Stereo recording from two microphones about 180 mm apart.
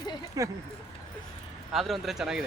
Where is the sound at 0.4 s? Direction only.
20° right (ahead or behind).